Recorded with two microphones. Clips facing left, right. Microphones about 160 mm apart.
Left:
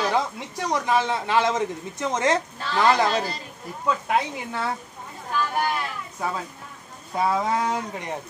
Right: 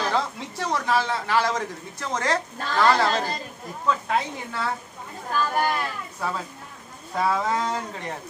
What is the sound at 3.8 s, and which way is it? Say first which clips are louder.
Speech: left 1 dB; 10° left (ahead or behind).